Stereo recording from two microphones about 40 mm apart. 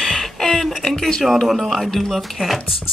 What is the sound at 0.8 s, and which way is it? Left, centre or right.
Speech, centre.